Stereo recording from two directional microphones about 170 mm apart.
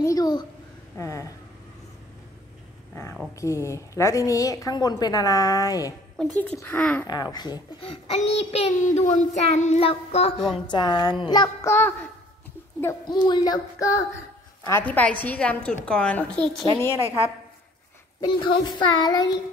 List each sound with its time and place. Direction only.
0.0 s a sound: 20° left (ahead or behind)
0.9 s speech: 20° left (ahead or behind)
3.3 s a woman's voice: 15° left (ahead or behind)
6.3 s speech: 10° left (ahead or behind)
7.1 s a woman's voice: 25° left (ahead or behind)
8.1 s child singing: 35° left (ahead or behind)
10.5 s a woman's voice: 25° left (ahead or behind)
11.7 s speech: 10° left (ahead or behind)
13.0 s a woman's voice: 25° left (ahead or behind); by 16.4 s 5° left (ahead or behind)
18.2 s a woman's voice: 30° left (ahead or behind)